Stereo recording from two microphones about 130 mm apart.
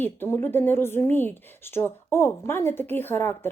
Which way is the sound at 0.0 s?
15° left (ahead or behind).